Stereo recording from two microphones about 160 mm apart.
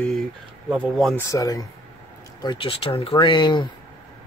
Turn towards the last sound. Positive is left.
turn(degrees=30)  # may be behind; listen again after turning